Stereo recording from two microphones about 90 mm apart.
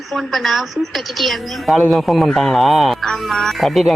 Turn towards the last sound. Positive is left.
turn(degrees=0)  # may be behind; listen again after turning